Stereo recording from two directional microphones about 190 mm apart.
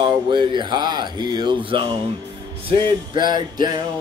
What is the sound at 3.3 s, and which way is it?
Speech, 20° right (ahead or behind).